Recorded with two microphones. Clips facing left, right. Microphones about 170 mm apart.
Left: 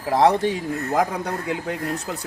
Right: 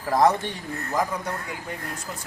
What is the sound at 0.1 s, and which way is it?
Speech, 30° left (ahead or behind).